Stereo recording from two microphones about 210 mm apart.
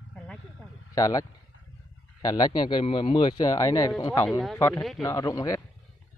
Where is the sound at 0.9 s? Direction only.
15° left (ahead or behind).